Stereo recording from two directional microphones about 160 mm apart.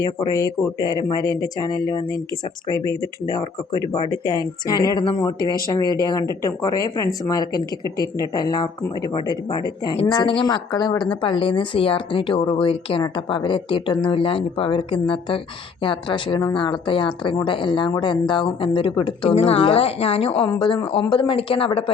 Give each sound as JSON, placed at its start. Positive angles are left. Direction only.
{"t": 0.0, "sound": "speech", "side_deg": 25}